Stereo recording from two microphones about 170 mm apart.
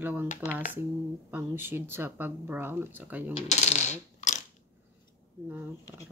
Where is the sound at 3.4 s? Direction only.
40° left (ahead or behind).